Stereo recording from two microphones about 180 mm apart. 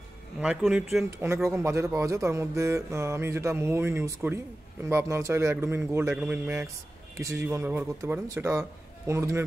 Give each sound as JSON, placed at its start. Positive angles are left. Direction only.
{"t": 0.4, "sound": "speech", "side_deg": -5}
{"t": 1.2, "sound": "speech", "side_deg": -15}